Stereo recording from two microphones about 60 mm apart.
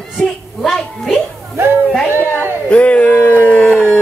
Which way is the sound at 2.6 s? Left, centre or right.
Left.